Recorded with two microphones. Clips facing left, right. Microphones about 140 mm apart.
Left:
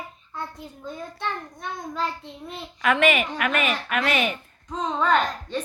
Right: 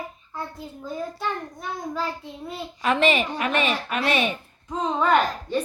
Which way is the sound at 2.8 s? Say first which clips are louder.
Even; 30° right (ahead or behind).